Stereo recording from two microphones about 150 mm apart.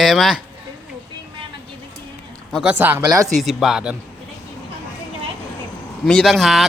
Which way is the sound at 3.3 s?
Centre (ahead or behind).